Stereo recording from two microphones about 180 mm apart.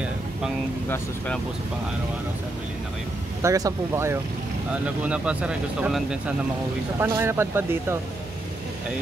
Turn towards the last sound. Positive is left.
turn(degrees=-15)  # may be behind; listen again after turning